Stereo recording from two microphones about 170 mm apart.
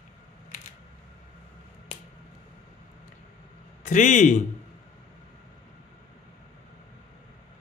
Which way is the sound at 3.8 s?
45° left (ahead or behind).